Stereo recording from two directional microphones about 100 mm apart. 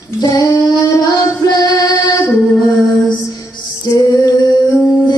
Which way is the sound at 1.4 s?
40° left (ahead or behind).